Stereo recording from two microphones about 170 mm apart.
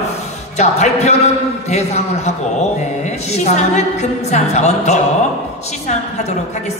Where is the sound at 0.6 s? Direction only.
40° left (ahead or behind).